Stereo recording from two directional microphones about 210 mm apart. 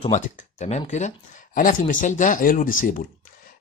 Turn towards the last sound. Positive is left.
turn(degrees=40)  # may be behind; listen again after turning